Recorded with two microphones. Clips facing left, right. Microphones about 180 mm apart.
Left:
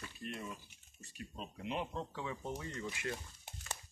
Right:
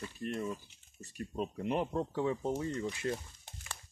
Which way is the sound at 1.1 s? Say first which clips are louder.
Right 10 dB; 50° right (ahead or behind).